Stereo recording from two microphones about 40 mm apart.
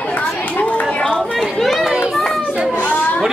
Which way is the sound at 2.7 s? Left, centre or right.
Left.